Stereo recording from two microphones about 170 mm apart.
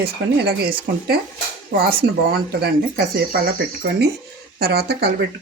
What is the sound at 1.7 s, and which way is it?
Speech, 60° right (ahead or behind).